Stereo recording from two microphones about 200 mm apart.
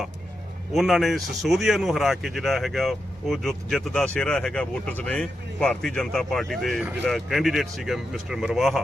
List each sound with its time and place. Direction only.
0.7 s speech: centre (ahead or behind)